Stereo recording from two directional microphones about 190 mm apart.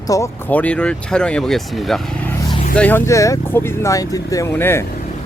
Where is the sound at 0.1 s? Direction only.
10° left (ahead or behind).